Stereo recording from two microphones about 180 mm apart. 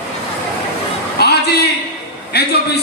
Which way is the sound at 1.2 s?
65° left (ahead or behind).